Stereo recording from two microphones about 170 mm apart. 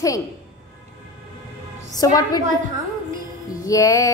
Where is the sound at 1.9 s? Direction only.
20° left (ahead or behind).